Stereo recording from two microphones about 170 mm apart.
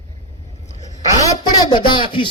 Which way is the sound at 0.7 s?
40° left (ahead or behind).